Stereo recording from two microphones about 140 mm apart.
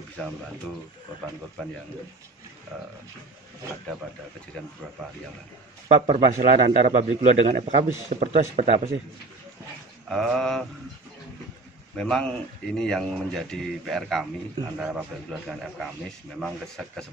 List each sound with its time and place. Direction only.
0.2 s speech: 5° left (ahead or behind)
6.0 s a man's voice: 60° right (ahead or behind)
10.0 s speech: centre (ahead or behind)
12.0 s speech: 5° left (ahead or behind)